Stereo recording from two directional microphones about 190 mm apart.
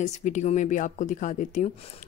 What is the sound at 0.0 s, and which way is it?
Speech, 40° left (ahead or behind).